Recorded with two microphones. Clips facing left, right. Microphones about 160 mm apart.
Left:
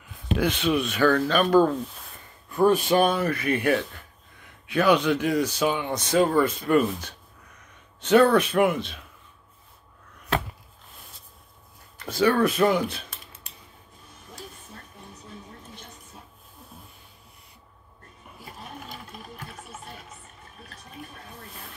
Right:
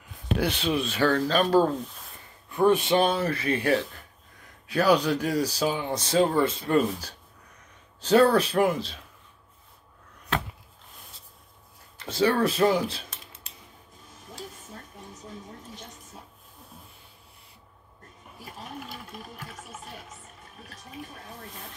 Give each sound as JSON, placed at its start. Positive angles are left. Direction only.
{"t": 0.3, "sound": "speech", "side_deg": -35}
{"t": 3.0, "sound": "speech", "side_deg": -30}
{"t": 12.0, "sound": "speech", "side_deg": -30}